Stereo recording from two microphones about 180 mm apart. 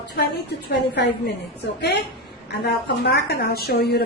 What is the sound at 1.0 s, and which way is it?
Speech, 70° left (ahead or behind).